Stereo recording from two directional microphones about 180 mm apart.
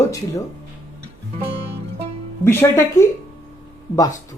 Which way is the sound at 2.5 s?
15° left (ahead or behind).